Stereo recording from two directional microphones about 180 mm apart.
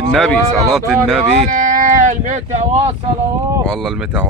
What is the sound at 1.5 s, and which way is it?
Speech, 50° right (ahead or behind).